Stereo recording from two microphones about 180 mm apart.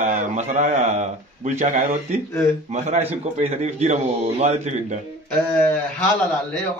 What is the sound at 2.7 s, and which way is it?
A man's voice, 35° right (ahead or behind).